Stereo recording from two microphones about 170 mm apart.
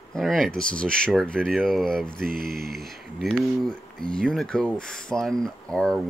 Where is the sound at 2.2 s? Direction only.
60° right (ahead or behind).